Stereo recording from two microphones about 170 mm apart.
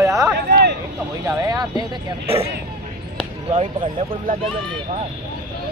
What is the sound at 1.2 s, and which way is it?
Speech, 20° right (ahead or behind).